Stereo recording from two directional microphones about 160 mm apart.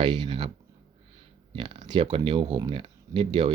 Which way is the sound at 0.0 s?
30° right (ahead or behind).